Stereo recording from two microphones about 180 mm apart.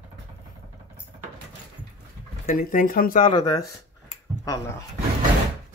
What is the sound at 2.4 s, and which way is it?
Speech, 45° left (ahead or behind).